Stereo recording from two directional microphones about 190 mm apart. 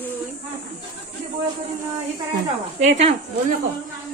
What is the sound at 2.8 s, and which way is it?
Speech, 35° right (ahead or behind).